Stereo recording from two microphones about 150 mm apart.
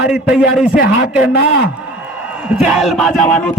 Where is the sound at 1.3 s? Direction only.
90° left.